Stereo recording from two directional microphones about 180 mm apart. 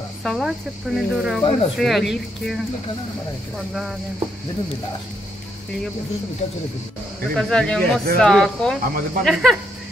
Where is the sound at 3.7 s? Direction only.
Centre (ahead or behind).